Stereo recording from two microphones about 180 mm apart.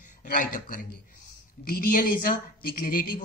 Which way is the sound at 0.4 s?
45° left (ahead or behind).